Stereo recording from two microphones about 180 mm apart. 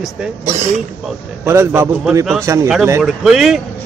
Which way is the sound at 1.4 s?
10° right (ahead or behind).